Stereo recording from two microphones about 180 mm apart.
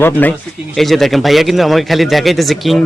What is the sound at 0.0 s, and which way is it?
A man's voice, 10° left (ahead or behind).